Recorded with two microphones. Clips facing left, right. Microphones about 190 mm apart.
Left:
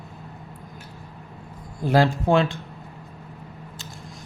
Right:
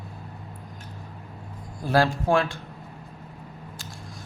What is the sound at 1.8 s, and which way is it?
Speech, 20° left (ahead or behind).